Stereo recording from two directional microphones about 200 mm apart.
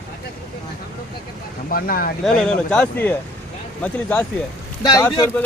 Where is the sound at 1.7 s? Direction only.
45° left (ahead or behind).